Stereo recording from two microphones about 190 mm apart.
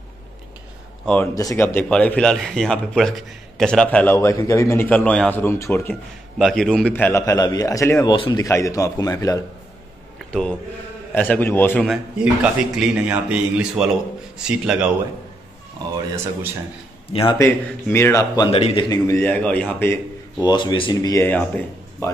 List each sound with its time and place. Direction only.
1.0 s speech: 5° left (ahead or behind)
1.3 s a man's voice: 20° left (ahead or behind)
6.3 s a man's voice: centre (ahead or behind); by 9.4 s 15° left (ahead or behind)
11.1 s a man's voice: 10° left (ahead or behind)
11.9 s a man's voice: 5° right (ahead or behind)
17.1 s a man's voice: 25° left (ahead or behind)
17.4 s a man's voice: 10° left (ahead or behind)
18.5 s a man's voice: 30° left (ahead or behind)
18.9 s a man's voice: 15° left (ahead or behind)